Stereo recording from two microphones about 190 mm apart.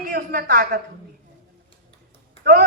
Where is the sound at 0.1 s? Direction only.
55° right (ahead or behind).